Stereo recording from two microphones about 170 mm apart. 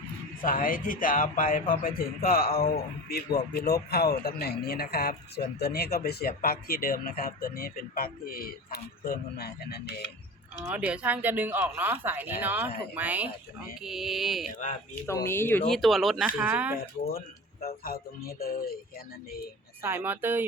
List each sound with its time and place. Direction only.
0.4 s a man's voice: 55° left (ahead or behind); by 9.8 s 70° left (ahead or behind)
10.6 s speech: 10° right (ahead or behind)
15.0 s speech: 15° left (ahead or behind); by 16.7 s 10° right (ahead or behind)
16.7 s a man's voice: 60° left (ahead or behind)
19.8 s speech: 10° right (ahead or behind)